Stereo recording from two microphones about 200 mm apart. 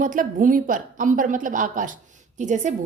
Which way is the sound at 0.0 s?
40° right (ahead or behind).